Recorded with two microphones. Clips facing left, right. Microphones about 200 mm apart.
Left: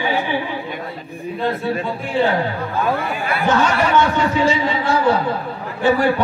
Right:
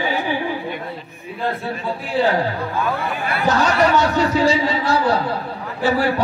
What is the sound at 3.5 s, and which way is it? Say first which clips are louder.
A man's voice: right 1 dB; 40° right (ahead or behind).